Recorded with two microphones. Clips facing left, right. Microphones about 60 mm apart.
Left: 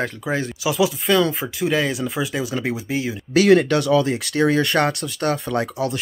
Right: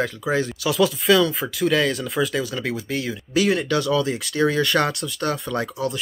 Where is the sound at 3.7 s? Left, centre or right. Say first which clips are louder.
Left 3 dB; left.